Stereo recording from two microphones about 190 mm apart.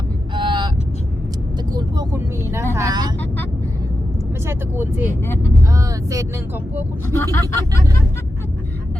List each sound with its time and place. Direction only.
0.3 s vehicle: 25° right (ahead or behind)
1.7 s vehicle: 15° right (ahead or behind)
2.7 s speech: 20° right (ahead or behind)
4.4 s speech: 10° right (ahead or behind)
5.2 s speech: 10° left (ahead or behind)
5.7 s speech: 15° right (ahead or behind)
7.2 s speech: 15° left (ahead or behind)